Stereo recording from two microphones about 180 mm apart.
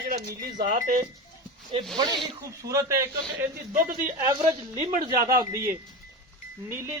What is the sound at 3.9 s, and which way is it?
Speech, 55° right (ahead or behind).